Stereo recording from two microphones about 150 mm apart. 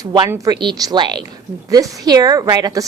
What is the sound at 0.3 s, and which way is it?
A woman's voice, 20° right (ahead or behind).